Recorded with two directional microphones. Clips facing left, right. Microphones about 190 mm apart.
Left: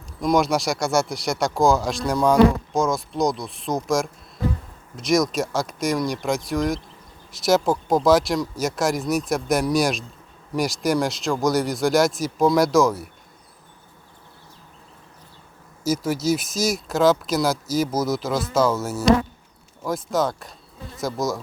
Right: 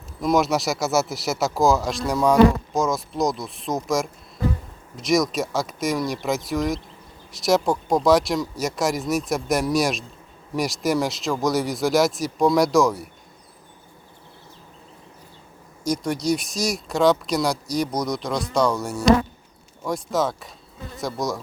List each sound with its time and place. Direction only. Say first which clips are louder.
0.2 s speech: even; centre (ahead or behind)
15.8 s speech: left 1 dB; 5° left (ahead or behind)